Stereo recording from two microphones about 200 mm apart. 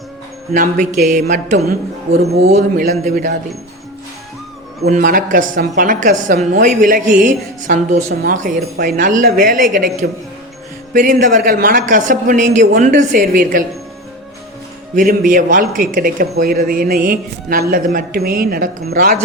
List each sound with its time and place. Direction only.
0.5 s a woman's voice: 40° right (ahead or behind)
4.9 s a woman's voice: 45° right (ahead or behind)
15.3 s a woman's voice: 40° right (ahead or behind)